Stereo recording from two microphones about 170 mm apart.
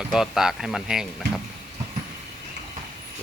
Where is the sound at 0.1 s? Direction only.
5° right (ahead or behind).